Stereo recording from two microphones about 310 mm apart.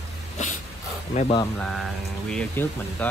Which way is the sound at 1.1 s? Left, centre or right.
Centre.